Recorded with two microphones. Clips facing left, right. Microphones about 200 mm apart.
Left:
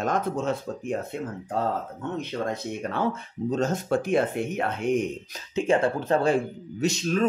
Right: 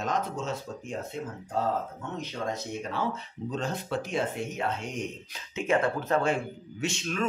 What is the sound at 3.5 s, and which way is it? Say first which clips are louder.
Speech: left 7 dB; 45° left (ahead or behind).